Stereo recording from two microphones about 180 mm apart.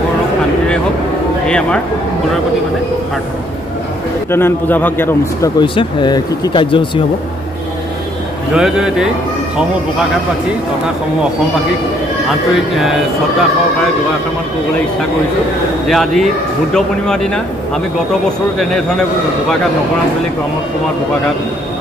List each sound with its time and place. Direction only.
4.3 s a man's voice: 10° left (ahead or behind)
5.6 s speech: 25° left (ahead or behind)
8.5 s speech: 5° right (ahead or behind)
12.3 s speech: centre (ahead or behind)
15.9 s speech: centre (ahead or behind)
18.6 s speech: centre (ahead or behind)